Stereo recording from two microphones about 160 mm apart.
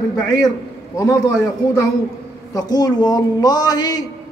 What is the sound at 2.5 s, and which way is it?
A man's voice, 25° left (ahead or behind).